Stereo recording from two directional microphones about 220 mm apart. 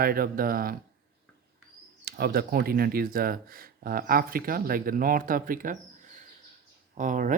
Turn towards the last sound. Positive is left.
turn(degrees=-35)  # may be behind; listen again after turning